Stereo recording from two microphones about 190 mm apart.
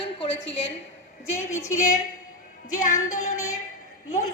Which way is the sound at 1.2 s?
90° left.